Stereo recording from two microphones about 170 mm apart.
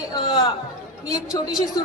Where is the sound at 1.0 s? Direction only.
20° left (ahead or behind).